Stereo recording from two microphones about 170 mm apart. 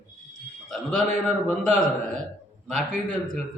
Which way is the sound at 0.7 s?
Centre (ahead or behind).